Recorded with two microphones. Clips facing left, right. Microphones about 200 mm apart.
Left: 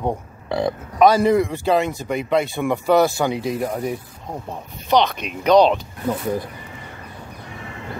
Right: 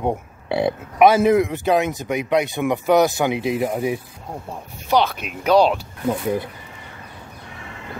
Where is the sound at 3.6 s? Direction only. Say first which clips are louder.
Right 2 dB; 10° right (ahead or behind).